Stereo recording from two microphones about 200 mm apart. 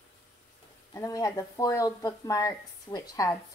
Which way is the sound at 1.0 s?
15° left (ahead or behind).